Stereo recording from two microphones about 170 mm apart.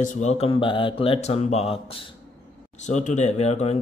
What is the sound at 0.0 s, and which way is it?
A man's voice, 40° left (ahead or behind).